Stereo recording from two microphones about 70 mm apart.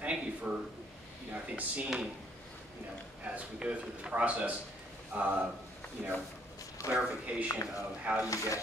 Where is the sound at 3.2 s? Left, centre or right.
Centre.